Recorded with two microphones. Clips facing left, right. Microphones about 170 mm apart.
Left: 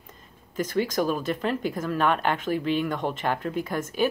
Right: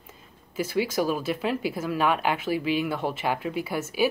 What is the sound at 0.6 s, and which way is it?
Speech, 10° right (ahead or behind).